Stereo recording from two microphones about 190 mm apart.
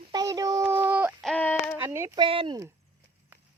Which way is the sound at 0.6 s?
10° right (ahead or behind).